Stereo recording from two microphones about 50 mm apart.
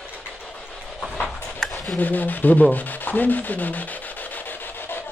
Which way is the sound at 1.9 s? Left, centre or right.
Left.